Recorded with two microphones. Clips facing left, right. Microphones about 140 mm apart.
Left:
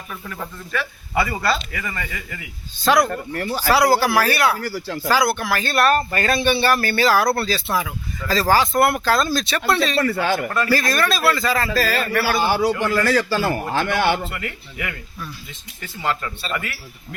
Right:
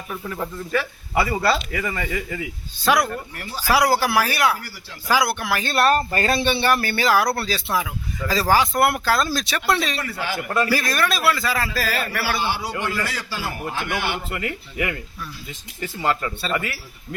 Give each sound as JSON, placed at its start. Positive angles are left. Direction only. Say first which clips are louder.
{"t": 0.1, "sound": "speech", "louder": "right 4 dB", "side_deg": -25}
{"t": 2.7, "sound": "speech", "louder": "left 2 dB", "side_deg": -10}
{"t": 3.3, "sound": "speech", "louder": "left 9 dB", "side_deg": 60}
{"t": 3.7, "sound": "speech", "louder": "left 2 dB", "side_deg": -10}
{"t": 5.7, "sound": "speech", "louder": "even", "side_deg": -30}
{"t": 10.0, "sound": "speech", "louder": "left 8 dB", "side_deg": 65}
{"t": 10.7, "sound": "speech", "louder": "left 2 dB", "side_deg": -10}
{"t": 12.3, "sound": "a man's voice", "louder": "left 8 dB", "side_deg": 90}
{"t": 14.3, "sound": "speech", "louder": "right 4 dB", "side_deg": -30}
{"t": 16.0, "sound": "speech", "louder": "right 1 dB", "side_deg": -25}